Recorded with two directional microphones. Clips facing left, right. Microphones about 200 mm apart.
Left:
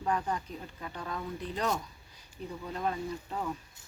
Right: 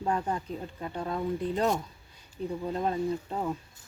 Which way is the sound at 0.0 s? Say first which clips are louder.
Right 2 dB; 30° right (ahead or behind).